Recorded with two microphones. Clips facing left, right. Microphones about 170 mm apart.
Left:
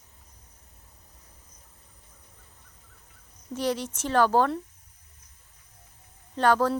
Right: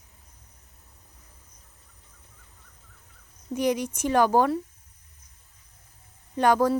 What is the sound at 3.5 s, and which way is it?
Speech, 15° right (ahead or behind).